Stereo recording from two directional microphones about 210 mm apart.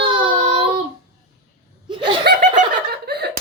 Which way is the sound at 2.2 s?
40° right (ahead or behind).